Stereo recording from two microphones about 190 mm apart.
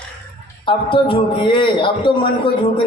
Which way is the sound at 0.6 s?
25° left (ahead or behind).